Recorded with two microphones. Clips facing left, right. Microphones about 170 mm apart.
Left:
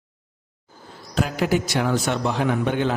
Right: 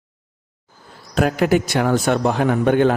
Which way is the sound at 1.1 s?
55° right (ahead or behind).